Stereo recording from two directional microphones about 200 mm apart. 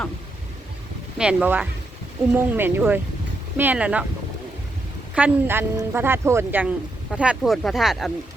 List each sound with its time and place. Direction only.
1.2 s speech: 5° right (ahead or behind)
5.1 s speech: 10° right (ahead or behind)